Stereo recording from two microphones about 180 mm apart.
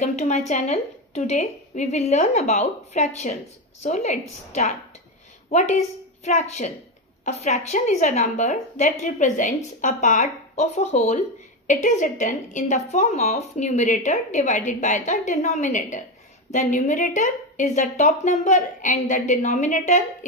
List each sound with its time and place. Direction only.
0.0 s a woman's voice: 40° left (ahead or behind)